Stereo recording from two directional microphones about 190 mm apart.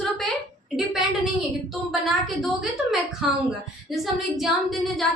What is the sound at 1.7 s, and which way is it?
Speech, centre (ahead or behind).